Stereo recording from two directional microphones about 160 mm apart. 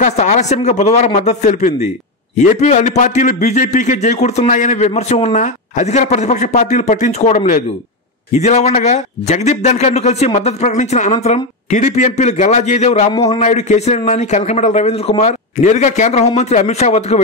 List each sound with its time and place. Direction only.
0.0 s a man's voice: 50° left (ahead or behind)
13.1 s speech: 25° left (ahead or behind)
13.4 s a man's voice: 45° left (ahead or behind)